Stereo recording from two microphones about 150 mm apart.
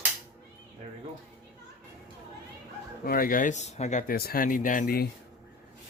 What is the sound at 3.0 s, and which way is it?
Speech, 70° left (ahead or behind).